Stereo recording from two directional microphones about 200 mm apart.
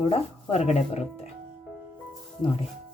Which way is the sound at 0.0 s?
30° left (ahead or behind).